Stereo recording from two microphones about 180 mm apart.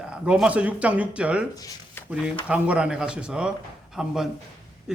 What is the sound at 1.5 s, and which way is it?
Speech, 20° left (ahead or behind).